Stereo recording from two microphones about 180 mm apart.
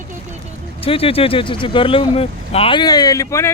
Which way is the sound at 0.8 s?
30° left (ahead or behind).